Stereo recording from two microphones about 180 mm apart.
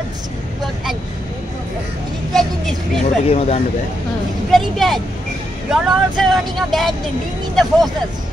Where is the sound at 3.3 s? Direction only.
35° left (ahead or behind).